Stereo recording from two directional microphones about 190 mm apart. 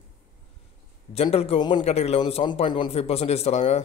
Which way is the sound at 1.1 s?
30° left (ahead or behind).